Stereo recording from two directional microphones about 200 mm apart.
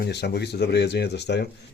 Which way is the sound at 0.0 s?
55° left (ahead or behind).